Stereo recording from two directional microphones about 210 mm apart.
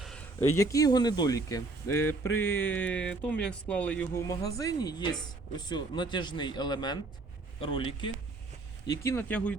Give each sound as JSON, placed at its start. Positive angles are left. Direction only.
{"t": 0.0, "sound": "speech", "side_deg": 5}
{"t": 8.9, "sound": "speech", "side_deg": 10}